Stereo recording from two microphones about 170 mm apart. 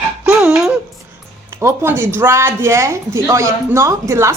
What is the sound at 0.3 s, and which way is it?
Dog, 5° right (ahead or behind).